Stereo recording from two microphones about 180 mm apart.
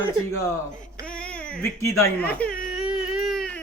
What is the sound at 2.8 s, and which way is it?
Baby cry, 5° right (ahead or behind).